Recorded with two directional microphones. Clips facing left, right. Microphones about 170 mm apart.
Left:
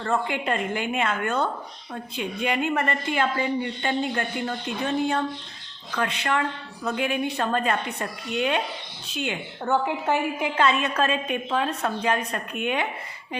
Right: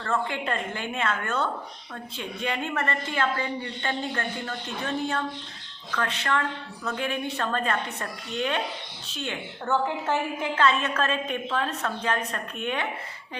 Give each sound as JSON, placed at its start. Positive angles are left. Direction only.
{"t": 0.0, "sound": "a woman's voice", "side_deg": 15}